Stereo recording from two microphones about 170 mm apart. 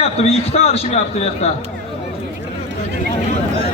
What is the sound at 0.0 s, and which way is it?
A man's voice, 35° left (ahead or behind).